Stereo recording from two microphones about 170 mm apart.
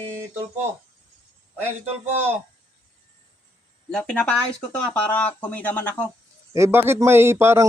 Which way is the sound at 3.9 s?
5° left (ahead or behind).